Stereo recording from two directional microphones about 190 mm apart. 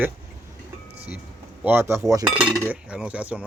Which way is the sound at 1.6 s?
10° right (ahead or behind).